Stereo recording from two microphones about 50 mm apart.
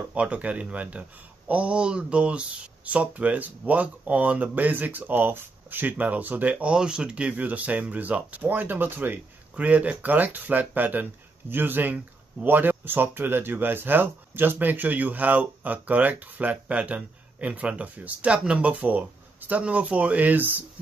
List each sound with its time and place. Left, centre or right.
0.1 s speech: right
6.7 s speech: centre; by 9.2 s right
9.6 s speech: right